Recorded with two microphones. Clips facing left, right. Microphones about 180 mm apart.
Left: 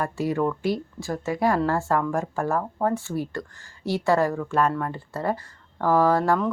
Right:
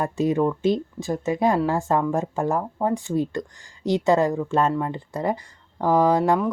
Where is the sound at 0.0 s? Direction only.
20° right (ahead or behind).